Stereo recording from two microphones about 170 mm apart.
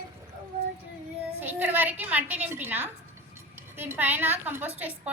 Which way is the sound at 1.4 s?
10° right (ahead or behind).